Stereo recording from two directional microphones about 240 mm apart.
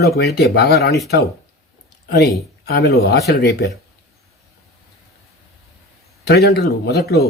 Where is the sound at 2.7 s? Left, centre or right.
Left.